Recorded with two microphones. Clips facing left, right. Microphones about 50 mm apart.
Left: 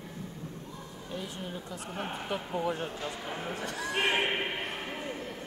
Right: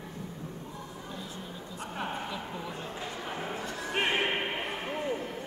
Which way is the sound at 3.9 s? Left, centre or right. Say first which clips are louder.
Even; centre.